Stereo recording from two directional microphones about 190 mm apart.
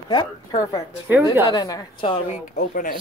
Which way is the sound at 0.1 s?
20° left (ahead or behind).